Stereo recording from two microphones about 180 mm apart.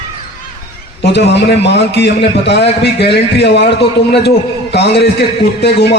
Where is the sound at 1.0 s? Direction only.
70° left (ahead or behind).